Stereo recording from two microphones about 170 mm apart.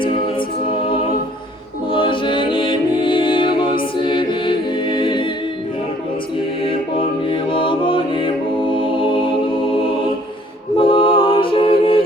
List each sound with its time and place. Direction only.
1.9 s music: 30° left (ahead or behind)
3.9 s a capella: 30° left (ahead or behind)
6.7 s choir: 30° left (ahead or behind)
10.8 s mantra: 30° left (ahead or behind)